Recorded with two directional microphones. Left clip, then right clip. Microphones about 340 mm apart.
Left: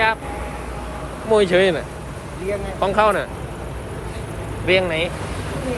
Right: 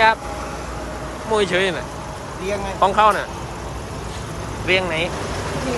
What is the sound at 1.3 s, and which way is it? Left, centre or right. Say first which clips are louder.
Speech: left 3 dB; centre.